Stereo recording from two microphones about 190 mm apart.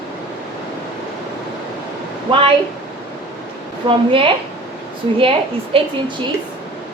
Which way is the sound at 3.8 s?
30° right (ahead or behind).